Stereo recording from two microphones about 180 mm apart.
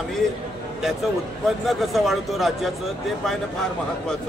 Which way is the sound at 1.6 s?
Centre (ahead or behind).